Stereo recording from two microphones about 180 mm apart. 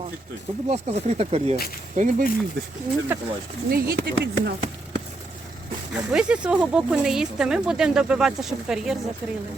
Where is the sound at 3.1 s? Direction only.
10° right (ahead or behind).